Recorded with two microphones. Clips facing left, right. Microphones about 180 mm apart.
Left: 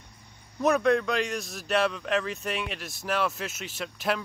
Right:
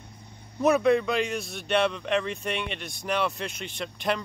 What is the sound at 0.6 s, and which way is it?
A man's voice, centre (ahead or behind).